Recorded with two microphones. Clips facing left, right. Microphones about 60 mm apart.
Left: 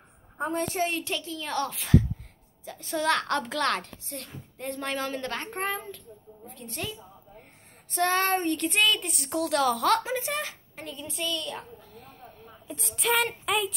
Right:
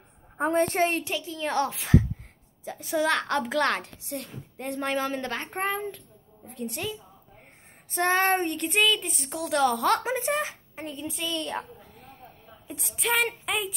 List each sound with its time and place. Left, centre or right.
0.4 s a woman's voice: right
1.0 s a woman's voice: centre
2.9 s a woman's voice: centre
8.0 s speech: right
8.5 s a woman's voice: centre
10.0 s speech: right
12.8 s a woman's voice: centre